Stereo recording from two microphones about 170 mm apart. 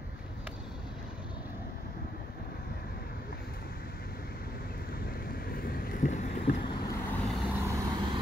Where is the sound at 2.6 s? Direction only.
65° left (ahead or behind).